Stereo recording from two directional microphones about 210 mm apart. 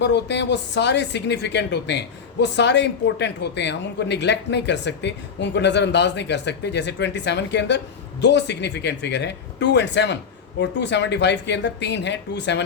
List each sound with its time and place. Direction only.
0.0 s speech: 55° left (ahead or behind)